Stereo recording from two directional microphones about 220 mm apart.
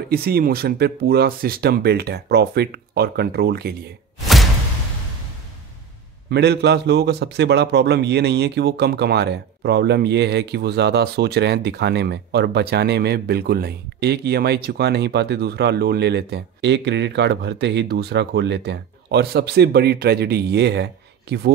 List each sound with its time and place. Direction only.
0.1 s a man's voice: 45° right (ahead or behind)
4.2 s whoosh: centre (ahead or behind)
6.3 s a man's voice: 50° right (ahead or behind)